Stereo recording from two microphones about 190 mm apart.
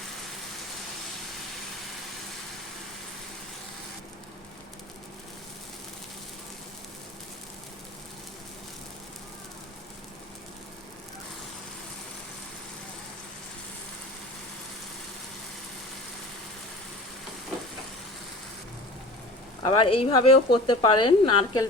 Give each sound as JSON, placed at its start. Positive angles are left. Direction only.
{"t": 19.7, "sound": "speech", "side_deg": 25}